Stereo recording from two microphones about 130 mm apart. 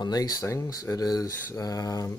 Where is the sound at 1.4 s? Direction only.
25° left (ahead or behind).